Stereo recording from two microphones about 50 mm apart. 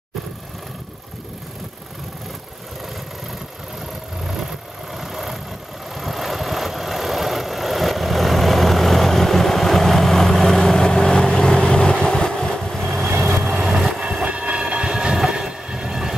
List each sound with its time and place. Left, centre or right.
4.2 s vehicle: centre
13.9 s train: right